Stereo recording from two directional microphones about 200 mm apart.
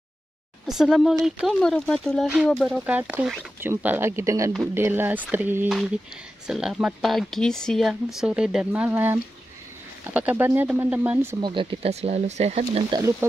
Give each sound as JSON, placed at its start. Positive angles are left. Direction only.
{"t": 0.7, "sound": "speech", "side_deg": 0}
{"t": 11.4, "sound": "speech", "side_deg": -25}